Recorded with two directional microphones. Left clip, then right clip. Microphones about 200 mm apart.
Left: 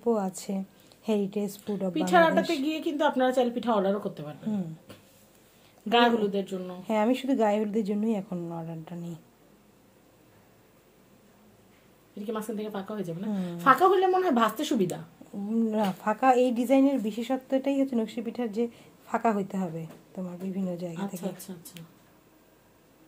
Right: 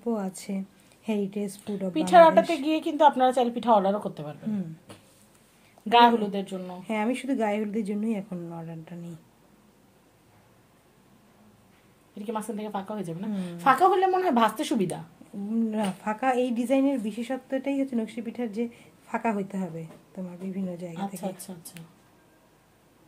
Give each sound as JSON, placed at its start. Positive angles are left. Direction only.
{"t": 0.0, "sound": "a woman's voice", "side_deg": 15}
{"t": 2.0, "sound": "a woman's voice", "side_deg": -25}
{"t": 5.9, "sound": "a woman's voice", "side_deg": -15}
{"t": 6.9, "sound": "a woman's voice", "side_deg": 15}
{"t": 12.2, "sound": "a woman's voice", "side_deg": -15}
{"t": 15.5, "sound": "a woman's voice", "side_deg": 15}
{"t": 21.2, "sound": "a woman's voice", "side_deg": -15}